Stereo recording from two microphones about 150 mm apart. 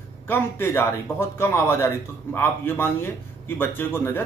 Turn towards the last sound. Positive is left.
turn(degrees=15)  # may be behind; listen again after turning